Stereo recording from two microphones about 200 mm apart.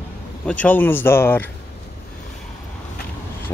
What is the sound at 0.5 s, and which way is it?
Speech, 10° left (ahead or behind).